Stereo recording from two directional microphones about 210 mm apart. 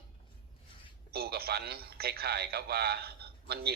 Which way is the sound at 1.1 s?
45° right (ahead or behind).